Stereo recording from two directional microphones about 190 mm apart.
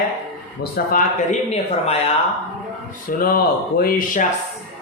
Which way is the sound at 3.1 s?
50° left (ahead or behind).